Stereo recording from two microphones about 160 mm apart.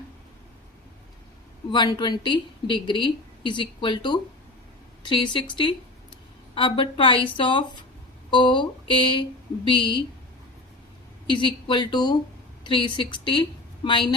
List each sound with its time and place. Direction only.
1.7 s a woman's voice: 30° left (ahead or behind)
11.3 s a woman's voice: 30° left (ahead or behind)